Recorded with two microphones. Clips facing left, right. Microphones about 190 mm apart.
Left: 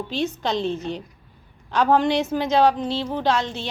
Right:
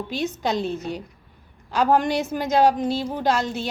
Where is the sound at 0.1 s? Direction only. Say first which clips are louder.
Even; 10° right (ahead or behind).